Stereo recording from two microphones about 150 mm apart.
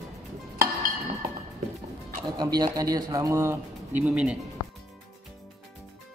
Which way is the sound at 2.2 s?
25° right (ahead or behind).